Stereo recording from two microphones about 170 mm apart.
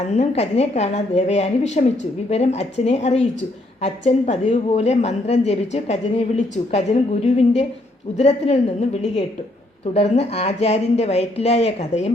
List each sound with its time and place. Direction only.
0.2 s a woman's voice: 40° left (ahead or behind)